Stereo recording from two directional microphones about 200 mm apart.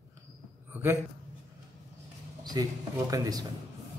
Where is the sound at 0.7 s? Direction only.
10° right (ahead or behind).